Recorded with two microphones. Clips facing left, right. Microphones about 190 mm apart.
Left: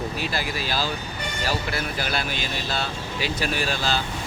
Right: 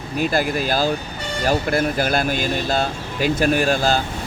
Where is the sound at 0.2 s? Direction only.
50° right (ahead or behind).